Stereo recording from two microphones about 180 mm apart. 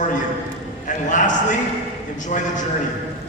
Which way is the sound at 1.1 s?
45° left (ahead or behind).